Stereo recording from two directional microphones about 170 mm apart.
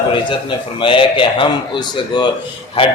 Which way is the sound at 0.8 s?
30° left (ahead or behind).